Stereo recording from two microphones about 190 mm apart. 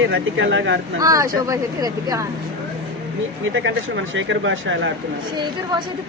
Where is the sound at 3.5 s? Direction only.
80° right.